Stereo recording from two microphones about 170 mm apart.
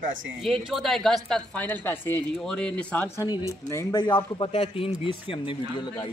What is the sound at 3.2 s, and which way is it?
Speech, 20° left (ahead or behind).